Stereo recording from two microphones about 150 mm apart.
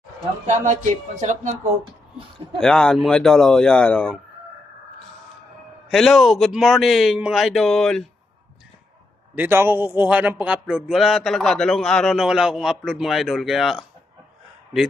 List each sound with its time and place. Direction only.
0.4 s speech: 55° right (ahead or behind)
2.6 s a man's voice: 5° left (ahead or behind)
5.9 s a man's voice: centre (ahead or behind)
9.3 s a man's voice: 15° right (ahead or behind)